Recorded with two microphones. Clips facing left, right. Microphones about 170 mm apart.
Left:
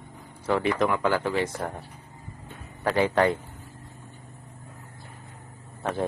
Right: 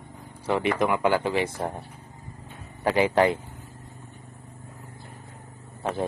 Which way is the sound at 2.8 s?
10° right (ahead or behind).